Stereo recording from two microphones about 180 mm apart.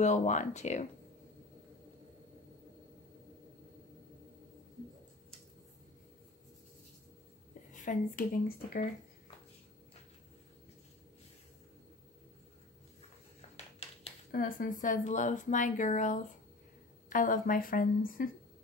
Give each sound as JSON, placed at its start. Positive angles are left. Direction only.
{"t": 0.0, "sound": "speech", "side_deg": 40}
{"t": 7.7, "sound": "speech", "side_deg": 45}
{"t": 14.3, "sound": "speech", "side_deg": 50}